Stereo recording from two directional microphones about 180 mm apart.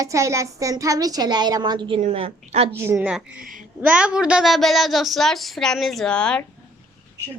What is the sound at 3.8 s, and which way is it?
A woman's voice, 5° right (ahead or behind).